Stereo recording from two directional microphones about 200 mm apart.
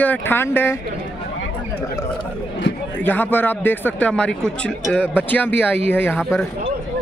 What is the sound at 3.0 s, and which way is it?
Speech, 10° left (ahead or behind).